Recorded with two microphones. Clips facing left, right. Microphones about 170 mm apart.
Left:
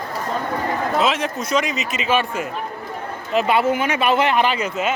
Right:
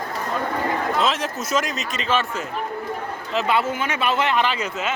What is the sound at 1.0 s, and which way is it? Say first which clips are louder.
A man's voice: left 2 dB; centre (ahead or behind).